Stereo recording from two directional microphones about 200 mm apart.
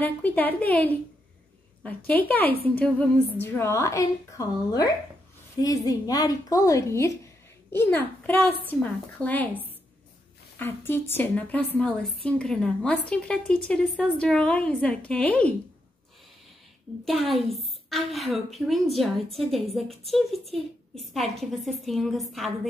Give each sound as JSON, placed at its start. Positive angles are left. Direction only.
{"t": 0.0, "sound": "a woman's voice", "side_deg": 10}
{"t": 2.0, "sound": "a woman's voice", "side_deg": 10}
{"t": 10.6, "sound": "a woman's voice", "side_deg": 10}
{"t": 17.6, "sound": "a woman's voice", "side_deg": 0}